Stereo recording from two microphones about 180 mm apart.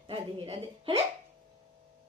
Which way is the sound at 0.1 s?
30° right (ahead or behind).